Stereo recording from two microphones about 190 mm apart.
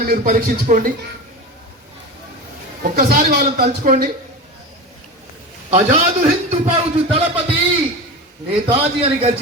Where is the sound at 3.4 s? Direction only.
45° right (ahead or behind).